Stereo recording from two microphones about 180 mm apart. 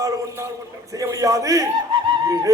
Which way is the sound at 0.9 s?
20° right (ahead or behind).